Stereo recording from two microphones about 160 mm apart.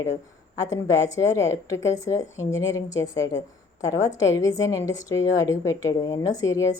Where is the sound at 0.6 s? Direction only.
20° left (ahead or behind).